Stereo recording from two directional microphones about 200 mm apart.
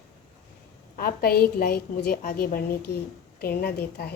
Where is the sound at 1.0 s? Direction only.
50° left (ahead or behind).